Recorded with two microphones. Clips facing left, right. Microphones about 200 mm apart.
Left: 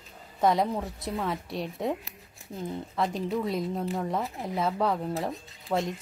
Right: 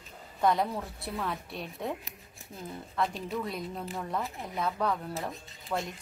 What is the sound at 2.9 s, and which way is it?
Speech, 20° left (ahead or behind).